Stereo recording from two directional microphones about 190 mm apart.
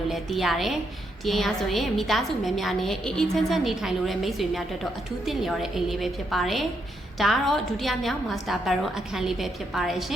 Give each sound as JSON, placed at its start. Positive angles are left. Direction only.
{"t": 0.1, "sound": "a woman's voice", "side_deg": 0}